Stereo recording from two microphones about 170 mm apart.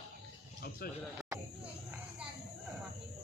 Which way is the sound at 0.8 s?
60° left (ahead or behind).